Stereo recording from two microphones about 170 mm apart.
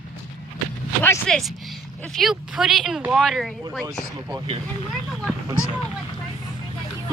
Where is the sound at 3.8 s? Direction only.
20° right (ahead or behind).